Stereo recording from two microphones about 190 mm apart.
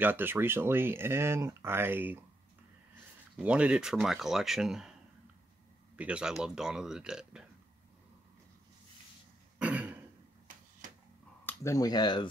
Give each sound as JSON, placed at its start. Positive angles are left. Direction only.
{"t": 0.0, "sound": "speech", "side_deg": -10}
{"t": 3.3, "sound": "speech", "side_deg": -5}
{"t": 5.9, "sound": "speech", "side_deg": -5}
{"t": 9.6, "sound": "throat clearing", "side_deg": -5}
{"t": 10.8, "sound": "a sound", "side_deg": -40}
{"t": 11.4, "sound": "speech", "side_deg": 15}